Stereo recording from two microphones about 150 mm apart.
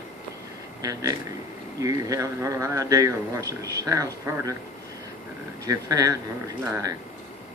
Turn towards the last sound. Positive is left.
turn(degrees=-20)  # may be behind; listen again after turning